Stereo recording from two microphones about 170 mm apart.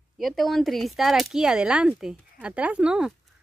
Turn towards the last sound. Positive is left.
turn(degrees=-5)  # may be behind; listen again after turning